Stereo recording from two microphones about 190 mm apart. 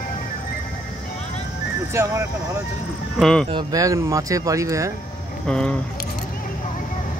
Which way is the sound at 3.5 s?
20° right (ahead or behind).